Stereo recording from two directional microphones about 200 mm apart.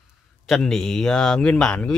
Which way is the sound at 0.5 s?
Centre (ahead or behind).